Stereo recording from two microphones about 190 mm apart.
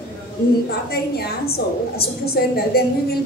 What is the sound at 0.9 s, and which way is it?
A woman's voice, 55° left (ahead or behind).